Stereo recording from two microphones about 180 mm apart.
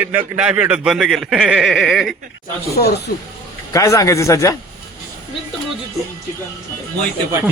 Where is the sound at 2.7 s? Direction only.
60° left (ahead or behind).